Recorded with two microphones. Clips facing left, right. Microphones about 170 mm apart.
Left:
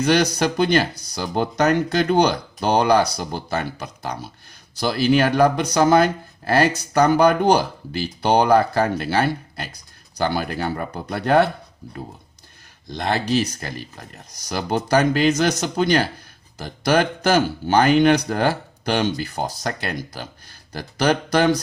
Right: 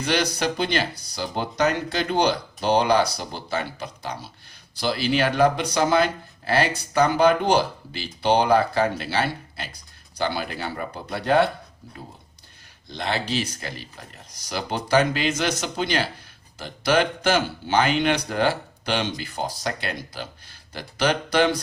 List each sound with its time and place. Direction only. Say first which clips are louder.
0.0 s speech: left 5 dB; 45° left (ahead or behind)
12.9 s speech: left 5 dB; 45° left (ahead or behind)